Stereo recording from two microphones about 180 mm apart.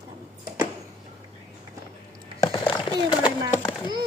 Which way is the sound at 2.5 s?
25° left (ahead or behind).